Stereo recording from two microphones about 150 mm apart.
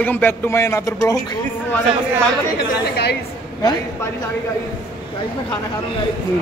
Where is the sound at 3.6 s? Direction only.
25° left (ahead or behind).